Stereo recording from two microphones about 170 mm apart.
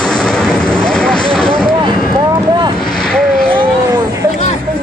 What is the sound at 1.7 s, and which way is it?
Vehicle, 25° right (ahead or behind).